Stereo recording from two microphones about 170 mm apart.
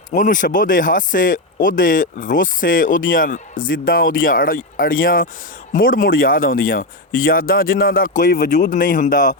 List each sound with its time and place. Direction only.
0.1 s speech: 50° left (ahead or behind)